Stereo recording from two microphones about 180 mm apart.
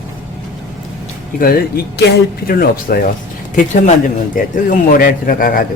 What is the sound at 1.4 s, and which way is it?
Speech, 60° left (ahead or behind).